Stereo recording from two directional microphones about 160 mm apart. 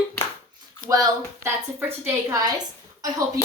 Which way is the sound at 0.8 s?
25° right (ahead or behind).